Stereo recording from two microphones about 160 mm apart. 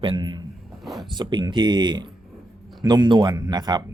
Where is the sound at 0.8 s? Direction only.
Centre (ahead or behind).